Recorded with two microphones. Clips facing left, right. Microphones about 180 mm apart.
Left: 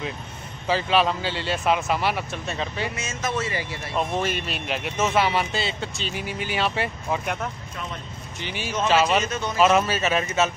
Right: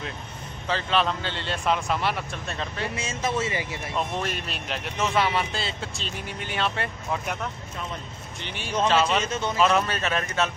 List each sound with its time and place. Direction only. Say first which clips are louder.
0.7 s speech: left 4 dB; 10° left (ahead or behind)
3.0 s speech: right 3 dB; 30° right (ahead or behind)
4.2 s speech: left 4 dB; centre (ahead or behind)
8.4 s speech: even; 5° left (ahead or behind)
9.2 s speech: even; 25° right (ahead or behind)
9.6 s speech: left 4 dB; 5° left (ahead or behind)